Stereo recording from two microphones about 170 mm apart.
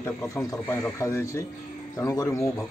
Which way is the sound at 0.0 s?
15° left (ahead or behind).